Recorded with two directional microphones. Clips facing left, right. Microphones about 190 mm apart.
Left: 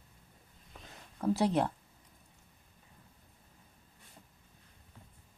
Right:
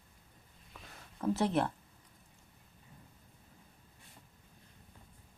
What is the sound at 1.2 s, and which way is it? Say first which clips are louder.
Speech: left 2 dB; 10° left (ahead or behind).